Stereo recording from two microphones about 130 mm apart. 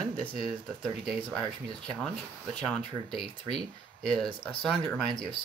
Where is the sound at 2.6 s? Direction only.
Centre (ahead or behind).